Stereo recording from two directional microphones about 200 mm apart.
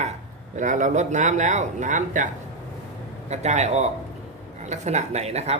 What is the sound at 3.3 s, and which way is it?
Speech, 35° right (ahead or behind).